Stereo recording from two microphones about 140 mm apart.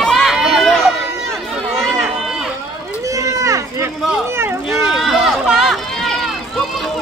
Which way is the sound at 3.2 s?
25° right (ahead or behind).